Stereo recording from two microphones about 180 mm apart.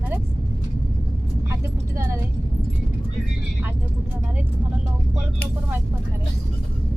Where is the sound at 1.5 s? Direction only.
15° right (ahead or behind).